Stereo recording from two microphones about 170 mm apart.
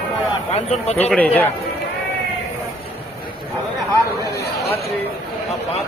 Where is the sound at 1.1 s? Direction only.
10° left (ahead or behind).